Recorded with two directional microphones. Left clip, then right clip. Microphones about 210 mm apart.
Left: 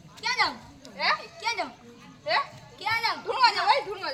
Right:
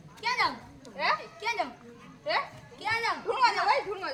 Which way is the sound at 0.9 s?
35° right (ahead or behind).